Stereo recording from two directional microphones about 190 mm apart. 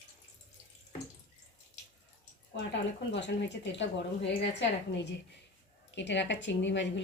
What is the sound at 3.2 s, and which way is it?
A woman's voice, 70° left (ahead or behind).